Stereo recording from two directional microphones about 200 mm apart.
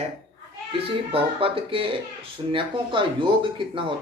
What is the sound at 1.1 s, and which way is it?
Speech, 25° right (ahead or behind).